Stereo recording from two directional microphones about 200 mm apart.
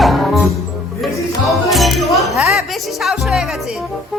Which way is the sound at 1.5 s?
Centre (ahead or behind).